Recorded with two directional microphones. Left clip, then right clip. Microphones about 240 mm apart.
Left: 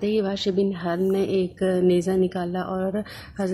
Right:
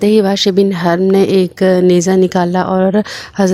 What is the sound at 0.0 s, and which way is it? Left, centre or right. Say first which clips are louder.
A woman's voice: right 13 dB; right.